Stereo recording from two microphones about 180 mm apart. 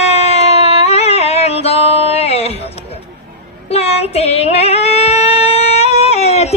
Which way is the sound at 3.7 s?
35° left (ahead or behind).